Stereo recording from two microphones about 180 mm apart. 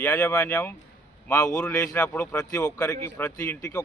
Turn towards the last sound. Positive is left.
turn(degrees=15)  # may be behind; listen again after turning